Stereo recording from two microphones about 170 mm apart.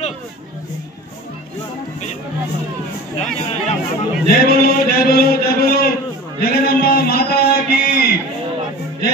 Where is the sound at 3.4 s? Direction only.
40° left (ahead or behind).